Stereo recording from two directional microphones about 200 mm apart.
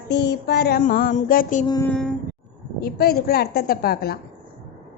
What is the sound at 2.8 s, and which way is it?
A woman's voice, 50° left (ahead or behind).